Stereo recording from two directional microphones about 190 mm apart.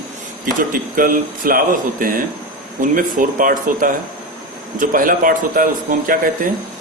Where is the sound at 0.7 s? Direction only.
45° right (ahead or behind).